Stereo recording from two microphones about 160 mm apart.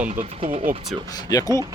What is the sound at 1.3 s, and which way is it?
Speech, 20° left (ahead or behind).